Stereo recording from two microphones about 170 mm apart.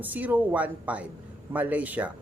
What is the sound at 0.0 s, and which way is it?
Speech, 10° right (ahead or behind).